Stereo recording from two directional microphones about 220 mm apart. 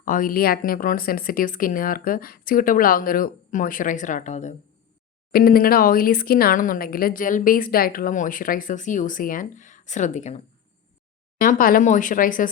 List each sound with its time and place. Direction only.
0.0 s speech: 40° left (ahead or behind)